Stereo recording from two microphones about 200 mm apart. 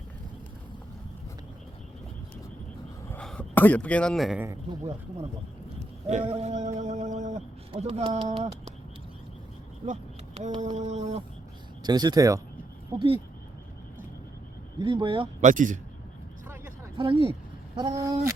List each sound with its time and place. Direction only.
3.1 s speech: 5° left (ahead or behind)
4.4 s speech: 20° right (ahead or behind)
6.1 s speech: 30° right (ahead or behind)
9.8 s a sound: 35° right (ahead or behind)
11.8 s speech: 20° right (ahead or behind)
14.8 s speech: 25° right (ahead or behind)
15.4 s a sound: 40° right (ahead or behind)
17.0 s speech: 25° right (ahead or behind)